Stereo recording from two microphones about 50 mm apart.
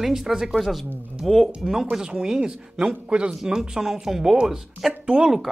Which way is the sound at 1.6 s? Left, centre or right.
Centre.